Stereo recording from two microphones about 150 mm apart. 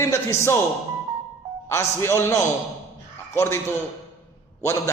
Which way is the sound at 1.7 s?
15° left (ahead or behind).